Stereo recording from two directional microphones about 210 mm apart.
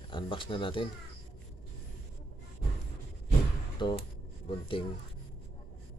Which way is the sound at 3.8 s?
20° left (ahead or behind).